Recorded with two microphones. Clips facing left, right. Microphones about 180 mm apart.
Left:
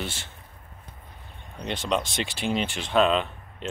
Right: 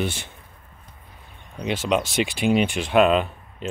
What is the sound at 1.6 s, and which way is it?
Speech, 5° right (ahead or behind).